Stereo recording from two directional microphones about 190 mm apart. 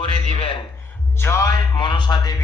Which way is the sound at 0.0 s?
30° left (ahead or behind).